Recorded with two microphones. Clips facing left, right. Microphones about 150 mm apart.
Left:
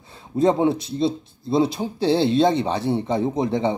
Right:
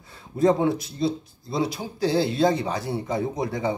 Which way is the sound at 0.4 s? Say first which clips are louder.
Left 2 dB; 25° left (ahead or behind).